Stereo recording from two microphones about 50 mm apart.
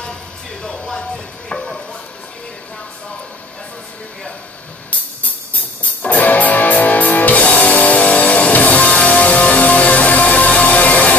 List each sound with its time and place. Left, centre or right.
0.7 s chopping: centre
6.0 s music: left